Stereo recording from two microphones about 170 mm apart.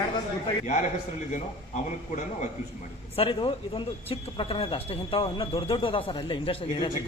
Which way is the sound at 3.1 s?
30° left (ahead or behind).